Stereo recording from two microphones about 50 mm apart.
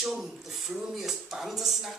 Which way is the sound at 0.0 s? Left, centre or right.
Centre.